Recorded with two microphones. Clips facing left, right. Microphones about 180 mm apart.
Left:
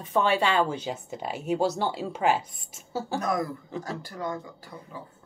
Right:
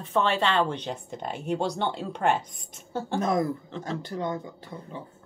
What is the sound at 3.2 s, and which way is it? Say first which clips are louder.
Speech: right 6 dB; 25° right (ahead or behind).